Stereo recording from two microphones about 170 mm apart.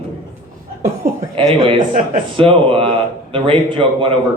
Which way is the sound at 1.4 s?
30° right (ahead or behind).